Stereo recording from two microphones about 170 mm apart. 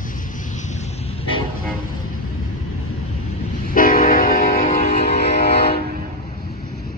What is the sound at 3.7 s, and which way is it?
Train, 55° left (ahead or behind).